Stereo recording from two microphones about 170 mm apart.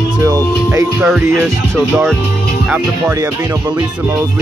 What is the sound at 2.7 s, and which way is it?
Speech, 15° right (ahead or behind).